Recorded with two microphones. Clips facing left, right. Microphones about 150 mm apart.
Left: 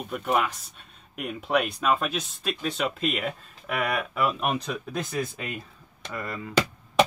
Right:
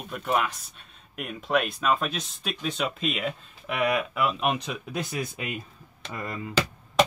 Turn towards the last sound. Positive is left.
turn(degrees=-20)  # may be behind; listen again after turning